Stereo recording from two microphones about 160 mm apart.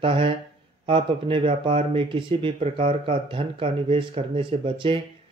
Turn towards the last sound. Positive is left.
turn(degrees=-35)  # may be behind; listen again after turning